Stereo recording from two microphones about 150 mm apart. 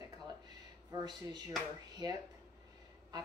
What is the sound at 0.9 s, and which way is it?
Speech, 25° right (ahead or behind).